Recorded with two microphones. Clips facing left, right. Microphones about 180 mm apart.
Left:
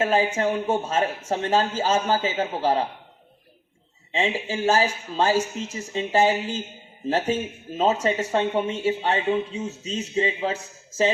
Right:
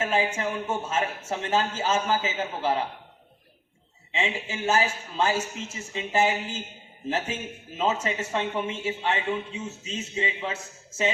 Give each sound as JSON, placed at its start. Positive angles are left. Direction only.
{"t": 0.0, "sound": "a man's voice", "side_deg": 35}
{"t": 4.1, "sound": "a man's voice", "side_deg": 35}